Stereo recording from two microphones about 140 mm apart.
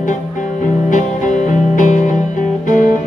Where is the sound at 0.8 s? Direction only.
65° left (ahead or behind).